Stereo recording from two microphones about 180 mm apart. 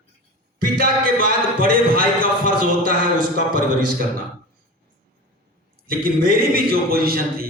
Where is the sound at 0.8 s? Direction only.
55° right (ahead or behind).